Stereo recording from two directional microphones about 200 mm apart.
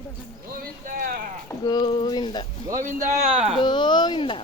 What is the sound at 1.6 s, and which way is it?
Speech, 20° left (ahead or behind).